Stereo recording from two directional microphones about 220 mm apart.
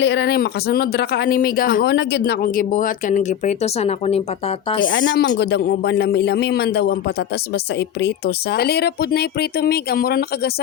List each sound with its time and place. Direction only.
0.0 s speech: 50° left (ahead or behind); by 4.9 s 25° left (ahead or behind)
4.9 s speech: 55° left (ahead or behind)